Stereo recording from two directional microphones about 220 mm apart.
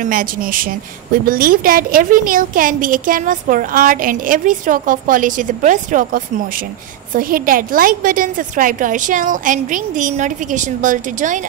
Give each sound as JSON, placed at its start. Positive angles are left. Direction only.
{"t": 0.0, "sound": "a woman's voice", "side_deg": -40}